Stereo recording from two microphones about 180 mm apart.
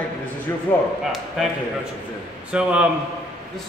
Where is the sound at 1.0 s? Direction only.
Centre (ahead or behind).